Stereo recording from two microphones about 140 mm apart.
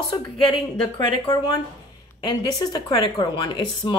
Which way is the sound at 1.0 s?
30° left (ahead or behind).